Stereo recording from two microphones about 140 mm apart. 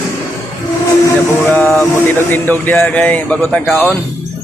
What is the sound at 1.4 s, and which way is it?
A man's voice, 15° left (ahead or behind).